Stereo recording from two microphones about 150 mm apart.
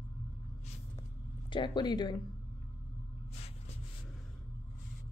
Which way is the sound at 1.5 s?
30° left (ahead or behind).